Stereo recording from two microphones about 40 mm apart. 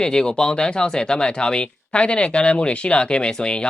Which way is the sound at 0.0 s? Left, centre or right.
Centre.